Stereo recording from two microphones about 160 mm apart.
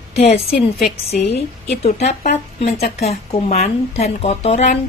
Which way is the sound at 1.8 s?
45° left (ahead or behind).